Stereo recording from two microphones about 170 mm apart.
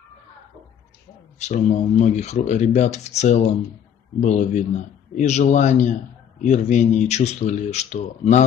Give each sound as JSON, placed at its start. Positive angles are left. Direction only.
{"t": 1.4, "sound": "speech", "side_deg": 40}